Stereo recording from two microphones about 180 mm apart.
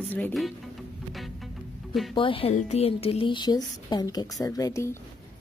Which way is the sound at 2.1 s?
30° left (ahead or behind).